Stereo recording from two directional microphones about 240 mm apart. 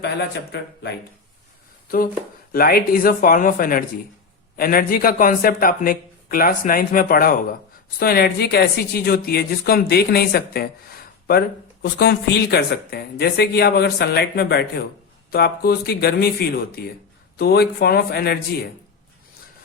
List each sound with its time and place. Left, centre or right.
0.0 s speech: left
2.5 s a woman's voice: left